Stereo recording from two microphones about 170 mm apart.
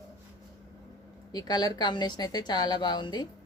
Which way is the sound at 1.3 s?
25° left (ahead or behind).